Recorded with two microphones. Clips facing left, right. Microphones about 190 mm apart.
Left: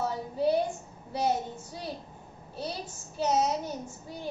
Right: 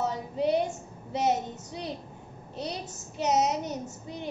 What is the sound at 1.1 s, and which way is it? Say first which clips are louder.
A child's voice: right 2 dB; 20° right (ahead or behind).